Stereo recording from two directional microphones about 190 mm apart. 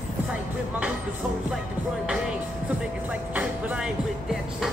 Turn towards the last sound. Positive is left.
turn(degrees=-5)  # may be behind; listen again after turning